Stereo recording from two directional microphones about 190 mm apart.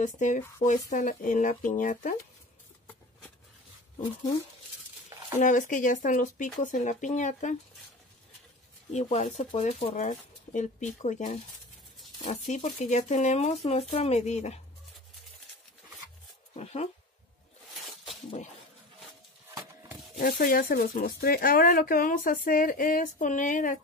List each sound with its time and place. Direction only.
0.0 s a woman's voice: 40° left (ahead or behind)
5.4 s speech: 40° left (ahead or behind)
8.9 s speech: 35° left (ahead or behind)
12.4 s speech: 40° left (ahead or behind)
16.5 s speech: 35° left (ahead or behind)
20.2 s a woman's voice: 50° left (ahead or behind)